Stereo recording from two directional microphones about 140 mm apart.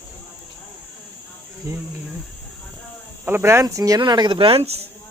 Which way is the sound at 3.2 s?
15° right (ahead or behind).